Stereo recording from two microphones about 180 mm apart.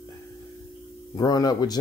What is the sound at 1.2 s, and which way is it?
Speech, 20° left (ahead or behind).